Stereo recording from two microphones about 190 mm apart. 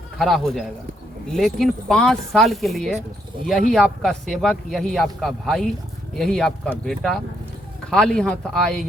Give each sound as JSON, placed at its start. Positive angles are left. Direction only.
{"t": 0.2, "sound": "a man's voice", "side_deg": 0}